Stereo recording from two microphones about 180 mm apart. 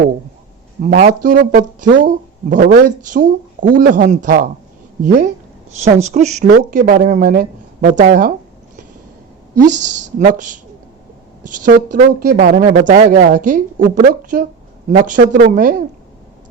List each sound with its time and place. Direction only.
0.8 s speech: 50° right (ahead or behind)
5.9 s speech: 40° right (ahead or behind)
9.6 s speech: 45° right (ahead or behind)
11.4 s speech: 45° right (ahead or behind)